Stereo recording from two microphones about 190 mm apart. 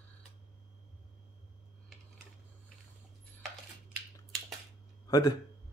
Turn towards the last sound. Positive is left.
turn(degrees=20)  # may be behind; listen again after turning